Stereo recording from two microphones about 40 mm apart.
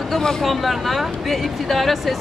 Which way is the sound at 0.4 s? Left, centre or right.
Centre.